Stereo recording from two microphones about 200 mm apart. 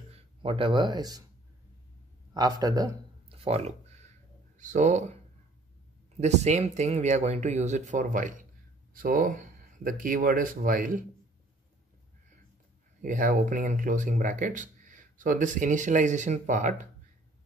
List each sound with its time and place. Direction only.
0.1 s speech: 25° right (ahead or behind)
2.3 s speech: 20° right (ahead or behind)
3.4 s speech: 30° right (ahead or behind)
6.1 s speech: 35° right (ahead or behind)
13.0 s speech: 40° right (ahead or behind)